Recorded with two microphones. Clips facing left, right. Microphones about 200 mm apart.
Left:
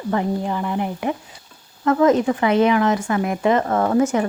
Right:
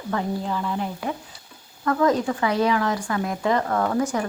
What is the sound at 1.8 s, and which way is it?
Speech, 20° left (ahead or behind).